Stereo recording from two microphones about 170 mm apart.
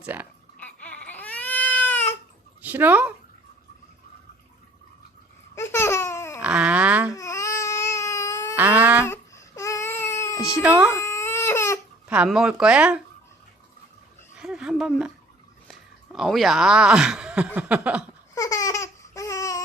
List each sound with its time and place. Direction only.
0.0 s speech: 10° right (ahead or behind)
0.6 s baby cry: 10° left (ahead or behind)
2.6 s speech: 10° right (ahead or behind)
5.5 s laughter: 15° left (ahead or behind)
6.4 s a sound: 5° right (ahead or behind)
7.1 s baby cry: 20° left (ahead or behind)
8.5 s a sound: 10° right (ahead or behind)
9.0 s baby cry: 15° left (ahead or behind)
10.6 s speech: 10° right (ahead or behind)
10.9 s baby cry: 15° left (ahead or behind)
12.0 s speech: 5° right (ahead or behind)
14.3 s a sound: 5° right (ahead or behind)
16.1 s speech: centre (ahead or behind)
18.3 s laughter: 20° left (ahead or behind)